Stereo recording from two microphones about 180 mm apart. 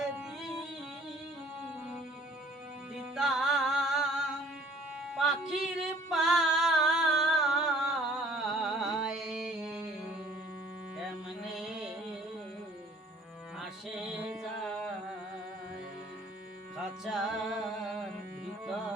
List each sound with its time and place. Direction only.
0.0 s a sound: 5° right (ahead or behind)
2.9 s music: 5° right (ahead or behind)
11.5 s music: 5° right (ahead or behind)
13.6 s music: centre (ahead or behind)
16.7 s music: 5° right (ahead or behind)